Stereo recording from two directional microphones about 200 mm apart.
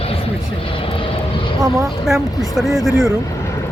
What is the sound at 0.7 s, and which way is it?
Vehicle, 25° left (ahead or behind).